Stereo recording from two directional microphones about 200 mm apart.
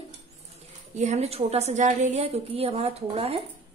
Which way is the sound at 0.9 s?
35° right (ahead or behind).